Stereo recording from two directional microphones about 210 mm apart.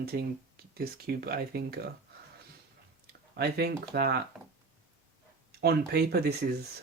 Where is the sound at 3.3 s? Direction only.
50° right (ahead or behind).